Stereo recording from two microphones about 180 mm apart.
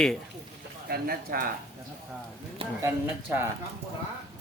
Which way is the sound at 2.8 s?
15° right (ahead or behind).